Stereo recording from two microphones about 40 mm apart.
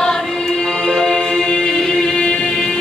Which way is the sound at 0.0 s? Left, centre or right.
Centre.